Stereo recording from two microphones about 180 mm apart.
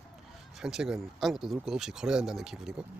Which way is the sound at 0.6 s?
5° right (ahead or behind).